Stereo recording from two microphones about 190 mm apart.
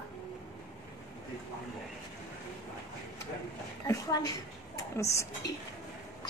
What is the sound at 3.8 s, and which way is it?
A woman's voice, 20° left (ahead or behind).